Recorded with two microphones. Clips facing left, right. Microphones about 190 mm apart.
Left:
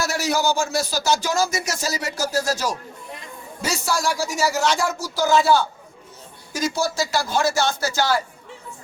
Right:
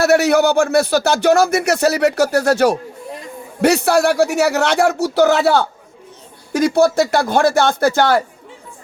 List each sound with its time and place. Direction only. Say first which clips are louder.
0.0 s speech: right 10 dB; 65° right (ahead or behind)